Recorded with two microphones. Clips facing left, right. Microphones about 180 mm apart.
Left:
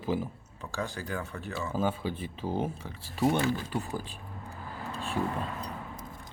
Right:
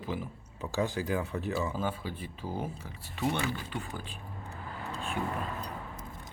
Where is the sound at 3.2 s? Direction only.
40° left (ahead or behind).